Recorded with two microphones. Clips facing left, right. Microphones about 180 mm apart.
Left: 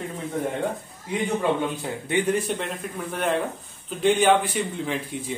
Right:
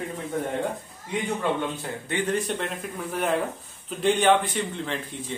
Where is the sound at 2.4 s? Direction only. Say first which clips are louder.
Left 1 dB; centre (ahead or behind).